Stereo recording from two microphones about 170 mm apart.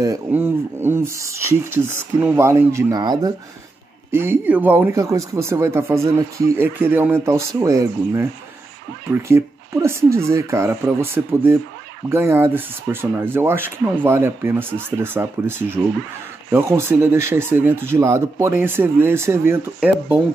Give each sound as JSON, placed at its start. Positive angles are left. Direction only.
{"t": 0.0, "sound": "speech", "side_deg": -15}
{"t": 9.3, "sound": "speech", "side_deg": -15}